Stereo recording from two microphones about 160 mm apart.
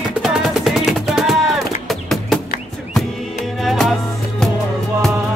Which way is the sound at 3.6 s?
Centre (ahead or behind).